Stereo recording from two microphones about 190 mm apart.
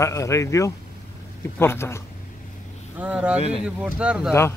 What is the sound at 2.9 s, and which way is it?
Speech, 5° right (ahead or behind).